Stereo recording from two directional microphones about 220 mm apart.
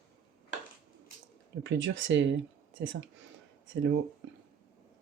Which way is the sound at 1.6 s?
55° right (ahead or behind).